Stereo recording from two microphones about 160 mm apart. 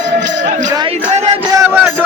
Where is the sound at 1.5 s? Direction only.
20° right (ahead or behind).